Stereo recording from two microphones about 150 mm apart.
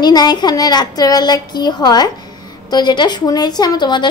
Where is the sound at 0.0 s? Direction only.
25° left (ahead or behind).